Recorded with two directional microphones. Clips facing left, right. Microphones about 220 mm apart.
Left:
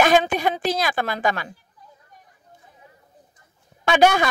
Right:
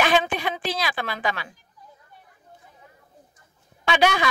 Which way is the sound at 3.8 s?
45° left (ahead or behind).